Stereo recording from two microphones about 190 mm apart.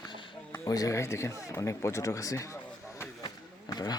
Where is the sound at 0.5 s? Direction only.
15° left (ahead or behind).